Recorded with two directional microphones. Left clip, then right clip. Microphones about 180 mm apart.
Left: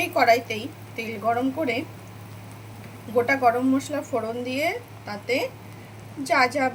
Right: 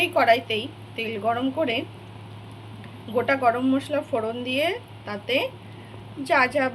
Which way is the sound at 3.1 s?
Centre (ahead or behind).